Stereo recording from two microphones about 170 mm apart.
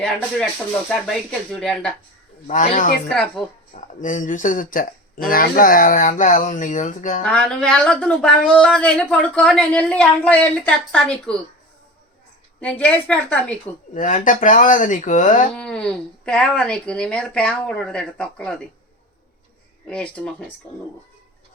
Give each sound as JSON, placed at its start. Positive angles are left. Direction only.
{"t": 0.9, "sound": "speech", "side_deg": 5}
{"t": 2.5, "sound": "speech", "side_deg": 45}
{"t": 3.1, "sound": "speech", "side_deg": 5}
{"t": 3.8, "sound": "speech", "side_deg": 50}
{"t": 7.2, "sound": "speech", "side_deg": 5}
{"t": 12.5, "sound": "a woman's voice", "side_deg": 5}
{"t": 13.9, "sound": "speech", "side_deg": 50}
{"t": 15.5, "sound": "speech", "side_deg": 5}
{"t": 19.9, "sound": "a woman's voice", "side_deg": 5}